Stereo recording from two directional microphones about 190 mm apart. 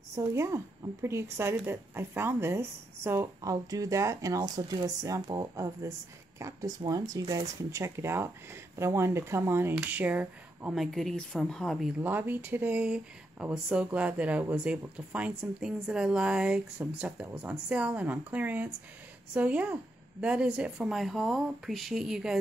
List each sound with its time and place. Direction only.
0.1 s speech: 15° right (ahead or behind); by 11.9 s centre (ahead or behind)
12.0 s a woman's voice: 10° right (ahead or behind)